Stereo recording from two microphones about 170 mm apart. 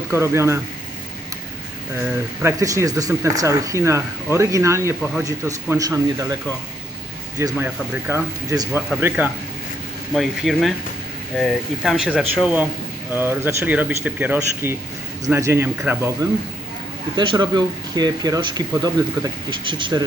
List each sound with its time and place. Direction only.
0.1 s speech: 15° right (ahead or behind)
2.4 s speech: 20° right (ahead or behind)
7.3 s speech: 15° right (ahead or behind)
10.2 s speech: centre (ahead or behind); by 20.1 s 25° right (ahead or behind)